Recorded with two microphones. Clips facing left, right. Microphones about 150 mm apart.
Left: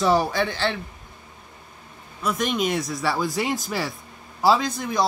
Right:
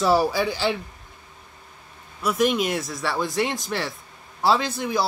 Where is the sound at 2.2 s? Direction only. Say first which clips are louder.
Right 3 dB; 5° right (ahead or behind).